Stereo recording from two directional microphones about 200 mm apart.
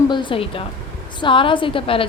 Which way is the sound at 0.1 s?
25° left (ahead or behind).